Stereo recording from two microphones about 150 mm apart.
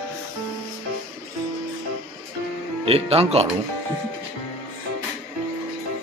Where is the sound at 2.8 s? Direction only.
40° right (ahead or behind).